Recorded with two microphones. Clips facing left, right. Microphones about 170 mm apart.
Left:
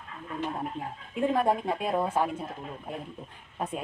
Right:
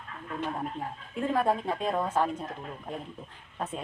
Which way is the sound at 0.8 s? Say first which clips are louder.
Left 3 dB; 10° left (ahead or behind).